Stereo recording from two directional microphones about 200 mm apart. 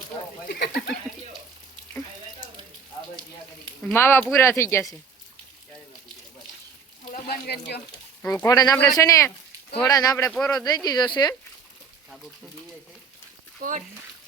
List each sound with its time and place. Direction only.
0.4 s speech: 50° left (ahead or behind)
3.9 s speech: 10° left (ahead or behind)
7.1 s a sound: 50° left (ahead or behind)
8.2 s speech: 15° left (ahead or behind)
13.6 s speech: 40° right (ahead or behind)